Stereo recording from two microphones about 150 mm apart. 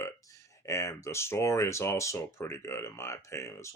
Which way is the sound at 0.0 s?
20° left (ahead or behind).